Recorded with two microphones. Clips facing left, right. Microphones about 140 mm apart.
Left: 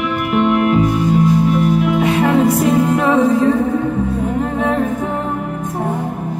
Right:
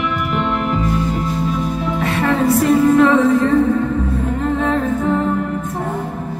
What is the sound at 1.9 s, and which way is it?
Music, 15° left (ahead or behind).